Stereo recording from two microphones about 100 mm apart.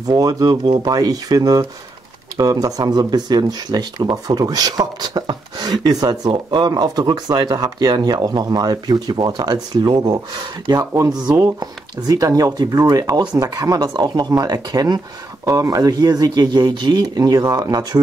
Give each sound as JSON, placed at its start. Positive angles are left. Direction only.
{"t": 0.0, "sound": "speech", "side_deg": -40}
{"t": 10.9, "sound": "speech", "side_deg": -30}